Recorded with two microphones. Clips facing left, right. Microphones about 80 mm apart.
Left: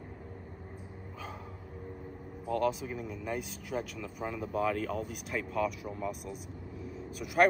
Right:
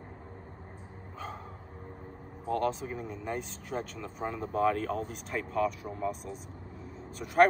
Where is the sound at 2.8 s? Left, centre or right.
Right.